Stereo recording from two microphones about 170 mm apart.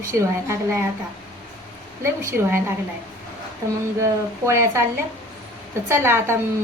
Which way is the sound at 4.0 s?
15° right (ahead or behind).